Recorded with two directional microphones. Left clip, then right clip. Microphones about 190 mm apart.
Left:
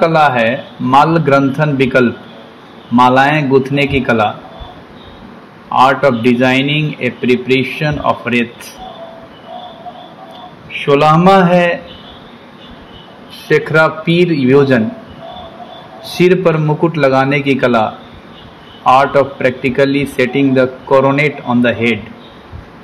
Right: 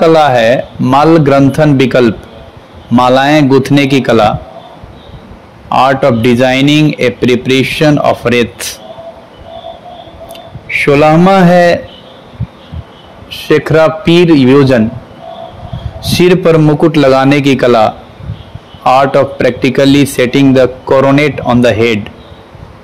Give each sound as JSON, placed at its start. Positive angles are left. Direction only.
{"t": 0.0, "sound": "a man's voice", "side_deg": -60}
{"t": 5.7, "sound": "a man's voice", "side_deg": -65}
{"t": 11.1, "sound": "a man's voice", "side_deg": -65}
{"t": 13.3, "sound": "a man's voice", "side_deg": -45}
{"t": 16.1, "sound": "a man's voice", "side_deg": -55}
{"t": 18.9, "sound": "a man's voice", "side_deg": -60}